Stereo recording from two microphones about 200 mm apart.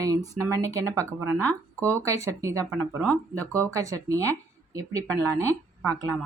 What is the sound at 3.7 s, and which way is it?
Speech, 15° right (ahead or behind).